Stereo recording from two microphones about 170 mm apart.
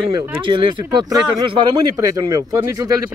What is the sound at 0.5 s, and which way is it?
Speech, 30° right (ahead or behind).